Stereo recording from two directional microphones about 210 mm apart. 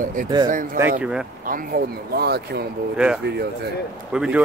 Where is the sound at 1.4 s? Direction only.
45° right (ahead or behind).